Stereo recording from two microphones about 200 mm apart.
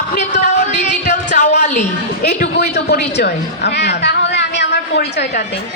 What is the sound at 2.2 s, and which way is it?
A woman's voice, 50° left (ahead or behind).